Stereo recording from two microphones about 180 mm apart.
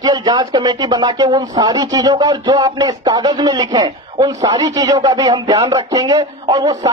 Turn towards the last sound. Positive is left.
turn(degrees=-20)  # may be behind; listen again after turning